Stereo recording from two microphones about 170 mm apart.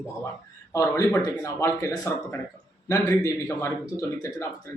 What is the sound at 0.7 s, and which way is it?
Speech, 20° left (ahead or behind).